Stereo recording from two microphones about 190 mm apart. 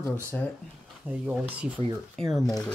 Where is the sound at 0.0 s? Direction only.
10° left (ahead or behind).